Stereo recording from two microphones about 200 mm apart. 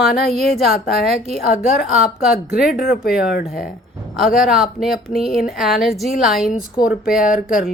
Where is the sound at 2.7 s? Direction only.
45° left (ahead or behind).